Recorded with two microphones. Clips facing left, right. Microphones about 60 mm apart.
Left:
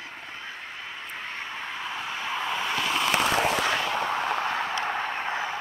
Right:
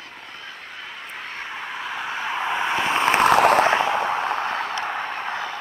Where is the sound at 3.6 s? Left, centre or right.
Right.